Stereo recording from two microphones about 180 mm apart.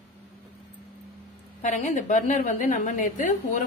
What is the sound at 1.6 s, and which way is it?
A woman's voice, 40° left (ahead or behind).